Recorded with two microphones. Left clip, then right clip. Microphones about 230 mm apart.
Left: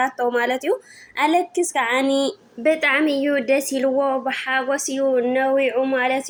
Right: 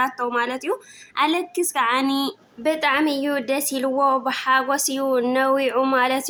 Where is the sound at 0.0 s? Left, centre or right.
Centre.